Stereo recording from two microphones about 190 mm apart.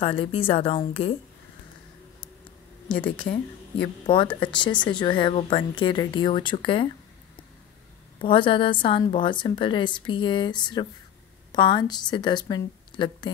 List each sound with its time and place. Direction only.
0.0 s a woman's voice: 30° left (ahead or behind)
2.9 s speech: 5° left (ahead or behind)
3.2 s a woman's voice: 25° left (ahead or behind)
8.2 s a woman's voice: 25° left (ahead or behind)